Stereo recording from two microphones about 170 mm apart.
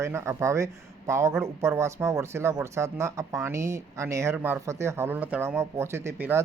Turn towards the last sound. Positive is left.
turn(degrees=-15)  # may be behind; listen again after turning